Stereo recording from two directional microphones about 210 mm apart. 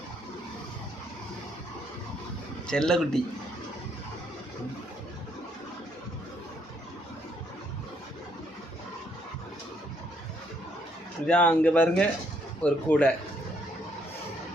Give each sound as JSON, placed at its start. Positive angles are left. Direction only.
{"t": 2.6, "sound": "a man's voice", "side_deg": 5}
{"t": 11.3, "sound": "speech", "side_deg": 5}